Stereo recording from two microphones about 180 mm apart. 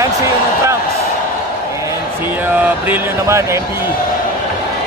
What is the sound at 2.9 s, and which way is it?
Speech, 15° right (ahead or behind).